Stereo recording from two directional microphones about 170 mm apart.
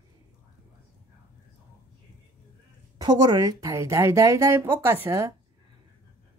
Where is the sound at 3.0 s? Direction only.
25° right (ahead or behind).